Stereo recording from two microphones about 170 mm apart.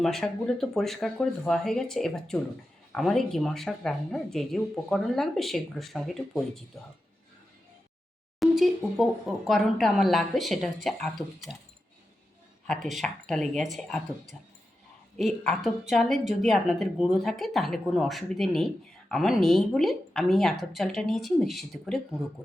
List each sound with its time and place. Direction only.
0.0 s a woman's voice: centre (ahead or behind)
8.4 s a woman's voice: centre (ahead or behind)
12.6 s a woman's voice: centre (ahead or behind)